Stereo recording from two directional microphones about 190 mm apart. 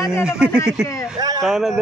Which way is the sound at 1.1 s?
20° right (ahead or behind).